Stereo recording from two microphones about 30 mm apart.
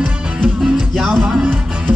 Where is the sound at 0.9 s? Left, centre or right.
Centre.